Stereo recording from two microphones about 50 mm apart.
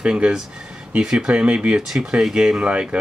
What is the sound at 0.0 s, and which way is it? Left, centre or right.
Speech, centre.